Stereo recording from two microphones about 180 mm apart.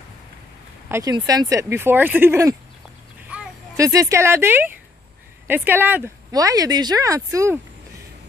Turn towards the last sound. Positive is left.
turn(degrees=-15)  # may be behind; listen again after turning